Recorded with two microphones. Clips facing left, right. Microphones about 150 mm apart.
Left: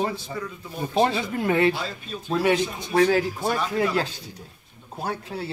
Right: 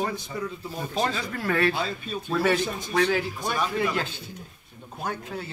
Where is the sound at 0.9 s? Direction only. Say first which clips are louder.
Left 6 dB; 25° left (ahead or behind).